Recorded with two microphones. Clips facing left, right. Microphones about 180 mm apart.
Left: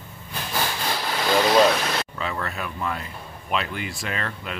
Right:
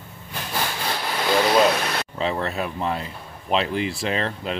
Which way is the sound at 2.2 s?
30° right (ahead or behind).